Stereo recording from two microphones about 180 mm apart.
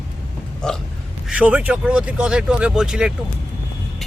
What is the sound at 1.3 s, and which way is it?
Speech, 5° right (ahead or behind).